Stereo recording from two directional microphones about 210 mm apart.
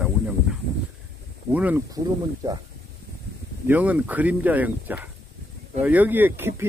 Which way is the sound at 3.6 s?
5° right (ahead or behind).